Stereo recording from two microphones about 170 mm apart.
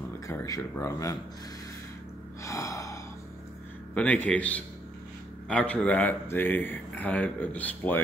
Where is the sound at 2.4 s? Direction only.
20° left (ahead or behind).